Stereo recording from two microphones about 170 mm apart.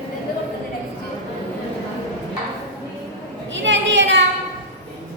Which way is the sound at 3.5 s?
90° right.